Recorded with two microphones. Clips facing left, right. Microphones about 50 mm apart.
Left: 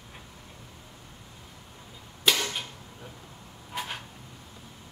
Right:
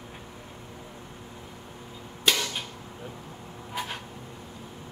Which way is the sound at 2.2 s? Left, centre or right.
Centre.